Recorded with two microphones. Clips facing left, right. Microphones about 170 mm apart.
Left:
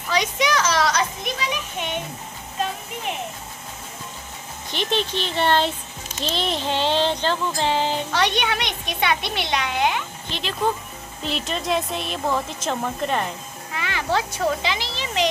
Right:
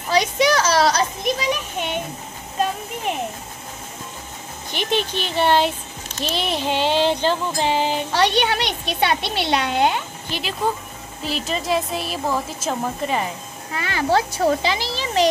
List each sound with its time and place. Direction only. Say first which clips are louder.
0.1 s a sound: right 4 dB; 35° right (ahead or behind)
5.2 s child singing: right 3 dB; 5° right (ahead or behind)
8.1 s a child's voice: right 3 dB; 30° right (ahead or behind)
10.3 s child singing: even; 5° right (ahead or behind)
11.2 s a woman's voice: right 2 dB; centre (ahead or behind)
13.7 s a child's voice: right 4 dB; 40° right (ahead or behind)